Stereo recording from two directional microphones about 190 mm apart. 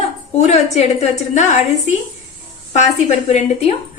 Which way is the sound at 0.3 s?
35° left (ahead or behind).